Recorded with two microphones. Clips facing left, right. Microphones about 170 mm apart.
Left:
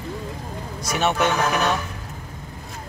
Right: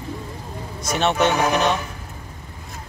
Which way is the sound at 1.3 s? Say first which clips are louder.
Right 2 dB; 20° right (ahead or behind).